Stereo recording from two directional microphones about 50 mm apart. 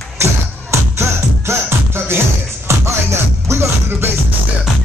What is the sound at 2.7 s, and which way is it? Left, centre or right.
Music, right.